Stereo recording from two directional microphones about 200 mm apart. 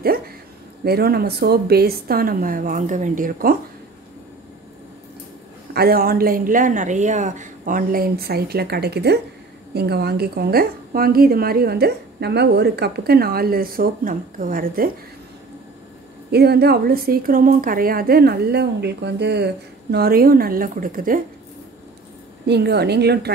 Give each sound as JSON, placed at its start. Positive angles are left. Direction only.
{"t": 0.8, "sound": "a woman's voice", "side_deg": -50}
{"t": 5.7, "sound": "a woman's voice", "side_deg": -50}
{"t": 16.3, "sound": "a woman's voice", "side_deg": -55}
{"t": 22.5, "sound": "a woman's voice", "side_deg": -55}